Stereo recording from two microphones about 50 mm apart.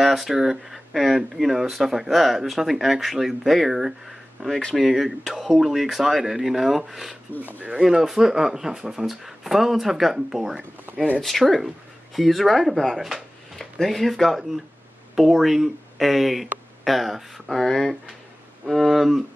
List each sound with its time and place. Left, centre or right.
0.0 s speech: centre
4.5 s speech: centre
4.7 s speech: centre
7.4 s speech: right
7.7 s speech: centre
11.1 s speech: centre